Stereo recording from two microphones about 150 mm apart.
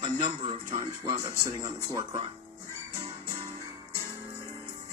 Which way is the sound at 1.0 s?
20° right (ahead or behind).